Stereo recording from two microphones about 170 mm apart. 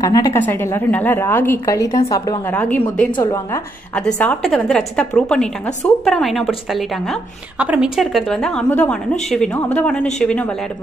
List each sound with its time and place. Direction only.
0.0 s a woman's voice: 20° left (ahead or behind)
2.5 s a woman's voice: 10° left (ahead or behind)
3.2 s a woman's voice: 25° left (ahead or behind)
3.9 s a woman's voice: 5° left (ahead or behind)